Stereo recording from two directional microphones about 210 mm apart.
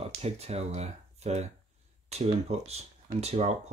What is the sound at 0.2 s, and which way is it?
Speech, 30° right (ahead or behind).